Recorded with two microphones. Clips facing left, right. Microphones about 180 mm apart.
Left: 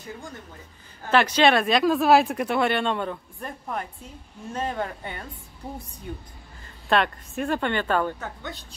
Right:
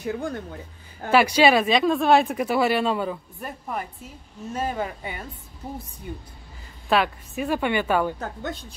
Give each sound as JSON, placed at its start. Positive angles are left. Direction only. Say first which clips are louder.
{"t": 0.0, "sound": "speech", "louder": "right 10 dB", "side_deg": -70}
{"t": 1.1, "sound": "speech", "louder": "right 2 dB", "side_deg": -10}
{"t": 6.9, "sound": "speech", "louder": "right 1 dB", "side_deg": -5}
{"t": 8.2, "sound": "a woman's voice", "louder": "right 4 dB", "side_deg": -45}